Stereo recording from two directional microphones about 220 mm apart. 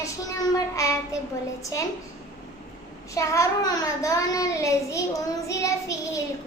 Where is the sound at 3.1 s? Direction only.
15° left (ahead or behind).